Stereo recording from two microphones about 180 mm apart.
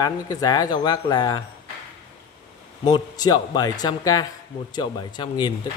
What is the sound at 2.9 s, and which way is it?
Speech, 20° left (ahead or behind).